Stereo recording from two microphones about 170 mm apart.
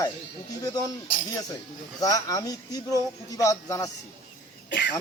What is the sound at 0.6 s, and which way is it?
Speech, 25° left (ahead or behind).